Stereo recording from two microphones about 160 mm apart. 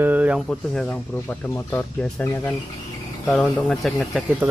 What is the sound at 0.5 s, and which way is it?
Speech, 5° left (ahead or behind).